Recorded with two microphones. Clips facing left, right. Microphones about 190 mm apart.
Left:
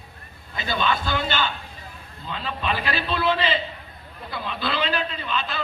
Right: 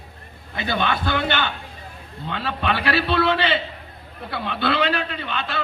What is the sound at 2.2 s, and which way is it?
A man's voice, 75° right (ahead or behind).